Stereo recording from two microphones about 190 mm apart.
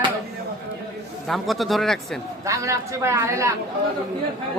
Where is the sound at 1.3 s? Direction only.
Centre (ahead or behind).